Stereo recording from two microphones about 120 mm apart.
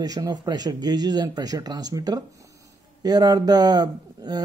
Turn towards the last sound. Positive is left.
turn(degrees=-35)  # may be behind; listen again after turning